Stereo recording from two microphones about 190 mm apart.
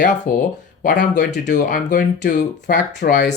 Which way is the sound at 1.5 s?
45° left (ahead or behind).